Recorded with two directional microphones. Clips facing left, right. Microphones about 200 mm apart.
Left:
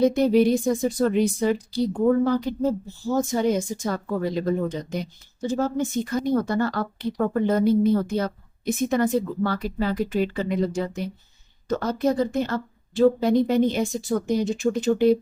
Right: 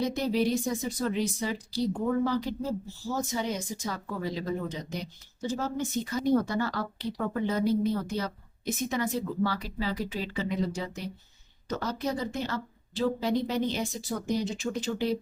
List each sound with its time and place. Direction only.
0.0 s speech: 55° left (ahead or behind)